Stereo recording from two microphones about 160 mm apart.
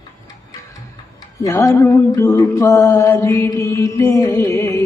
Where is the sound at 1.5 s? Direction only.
20° left (ahead or behind).